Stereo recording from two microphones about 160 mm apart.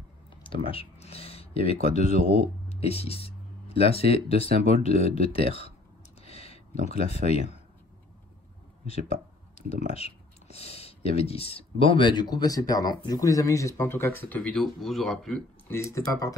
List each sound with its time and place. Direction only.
0.3 s speech: 35° left (ahead or behind)
6.2 s a sound: 40° left (ahead or behind)
8.8 s speech: 40° left (ahead or behind); by 15.4 s centre (ahead or behind)
15.7 s speech: 20° left (ahead or behind)